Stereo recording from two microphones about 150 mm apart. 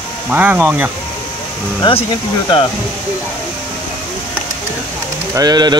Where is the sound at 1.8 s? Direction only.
35° left (ahead or behind).